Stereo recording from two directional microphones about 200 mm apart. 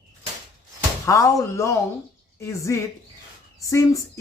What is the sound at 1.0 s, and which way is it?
Speech, 15° left (ahead or behind).